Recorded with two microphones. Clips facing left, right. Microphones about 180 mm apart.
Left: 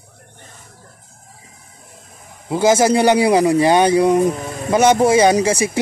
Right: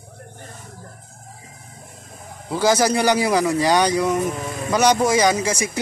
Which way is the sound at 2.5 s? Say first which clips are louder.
Left 4 dB; 20° left (ahead or behind).